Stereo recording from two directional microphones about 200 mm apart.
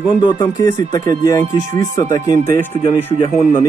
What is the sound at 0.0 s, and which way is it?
Speech, 25° left (ahead or behind).